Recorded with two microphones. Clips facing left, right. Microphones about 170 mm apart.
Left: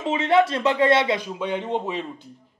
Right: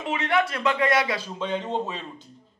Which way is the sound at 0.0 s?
25° left (ahead or behind).